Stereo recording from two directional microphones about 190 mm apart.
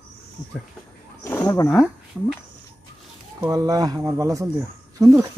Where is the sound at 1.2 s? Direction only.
10° left (ahead or behind).